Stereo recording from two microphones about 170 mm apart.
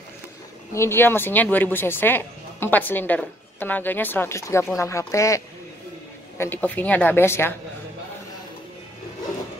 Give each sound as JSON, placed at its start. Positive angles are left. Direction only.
{"t": 0.7, "sound": "speech", "side_deg": 15}